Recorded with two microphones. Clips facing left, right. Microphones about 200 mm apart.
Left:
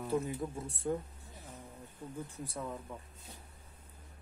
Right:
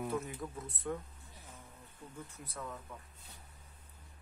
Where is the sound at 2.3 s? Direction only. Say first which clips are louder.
Left 5 dB; 30° left (ahead or behind).